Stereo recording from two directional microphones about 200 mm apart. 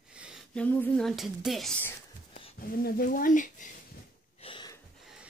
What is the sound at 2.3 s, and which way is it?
Speech, 45° left (ahead or behind).